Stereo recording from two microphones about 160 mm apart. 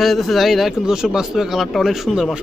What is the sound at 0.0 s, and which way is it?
Speech, centre (ahead or behind).